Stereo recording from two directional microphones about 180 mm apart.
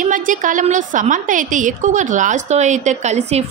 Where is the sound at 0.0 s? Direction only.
45° right (ahead or behind).